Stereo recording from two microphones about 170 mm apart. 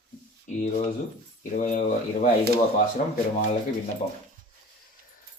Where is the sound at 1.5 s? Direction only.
45° left (ahead or behind).